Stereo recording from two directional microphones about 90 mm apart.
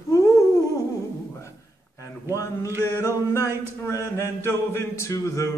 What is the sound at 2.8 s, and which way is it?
Chant, 30° left (ahead or behind).